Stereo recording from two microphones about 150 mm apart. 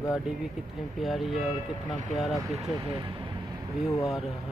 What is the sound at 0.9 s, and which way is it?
Speech, centre (ahead or behind).